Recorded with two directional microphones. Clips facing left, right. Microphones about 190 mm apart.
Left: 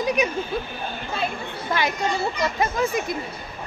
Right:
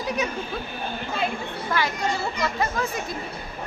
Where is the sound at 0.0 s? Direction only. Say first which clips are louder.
Left 5 dB; 15° left (ahead or behind).